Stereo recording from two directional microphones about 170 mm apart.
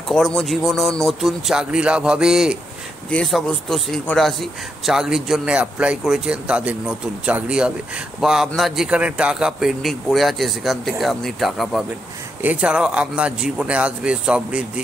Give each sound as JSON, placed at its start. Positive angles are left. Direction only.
{"t": 0.1, "sound": "speech", "side_deg": 5}